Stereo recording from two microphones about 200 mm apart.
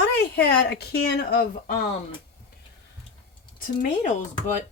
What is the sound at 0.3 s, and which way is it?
Speech, 55° left (ahead or behind).